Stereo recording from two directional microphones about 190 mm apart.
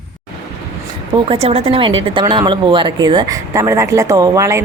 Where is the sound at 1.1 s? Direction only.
30° right (ahead or behind).